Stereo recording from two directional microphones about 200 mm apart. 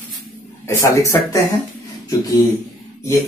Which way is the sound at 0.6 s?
15° left (ahead or behind).